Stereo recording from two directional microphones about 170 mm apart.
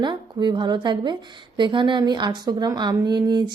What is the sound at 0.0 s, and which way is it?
A woman's voice, 25° right (ahead or behind).